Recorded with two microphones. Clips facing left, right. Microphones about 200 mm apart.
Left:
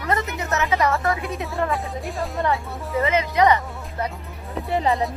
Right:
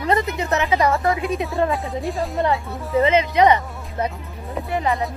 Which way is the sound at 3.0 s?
25° right (ahead or behind).